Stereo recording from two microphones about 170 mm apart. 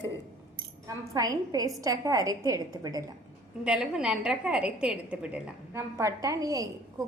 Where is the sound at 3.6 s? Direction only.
5° right (ahead or behind).